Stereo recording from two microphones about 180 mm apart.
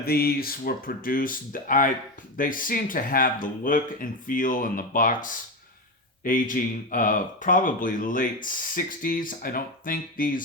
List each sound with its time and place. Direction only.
0.0 s speech: 60° left (ahead or behind)